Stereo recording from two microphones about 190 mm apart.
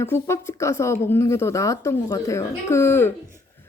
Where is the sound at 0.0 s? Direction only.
15° left (ahead or behind).